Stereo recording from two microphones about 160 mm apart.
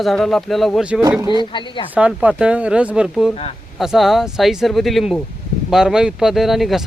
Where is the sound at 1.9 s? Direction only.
10° right (ahead or behind).